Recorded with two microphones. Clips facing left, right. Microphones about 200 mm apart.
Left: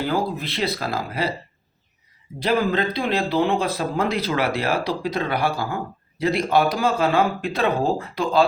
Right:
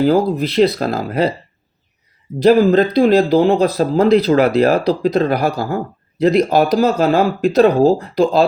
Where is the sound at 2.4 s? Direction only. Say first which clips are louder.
Right 10 dB; 40° right (ahead or behind).